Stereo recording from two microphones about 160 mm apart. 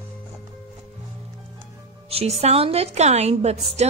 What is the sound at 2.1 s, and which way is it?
Speech, 40° right (ahead or behind).